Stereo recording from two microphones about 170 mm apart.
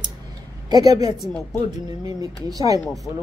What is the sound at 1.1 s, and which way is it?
Speech, centre (ahead or behind).